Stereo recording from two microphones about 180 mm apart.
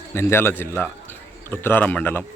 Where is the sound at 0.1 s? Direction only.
15° left (ahead or behind).